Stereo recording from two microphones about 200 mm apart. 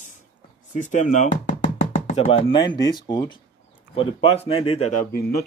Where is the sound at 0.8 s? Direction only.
35° left (ahead or behind).